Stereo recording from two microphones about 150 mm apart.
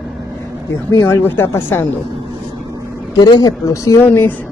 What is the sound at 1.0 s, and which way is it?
Speech, 15° left (ahead or behind).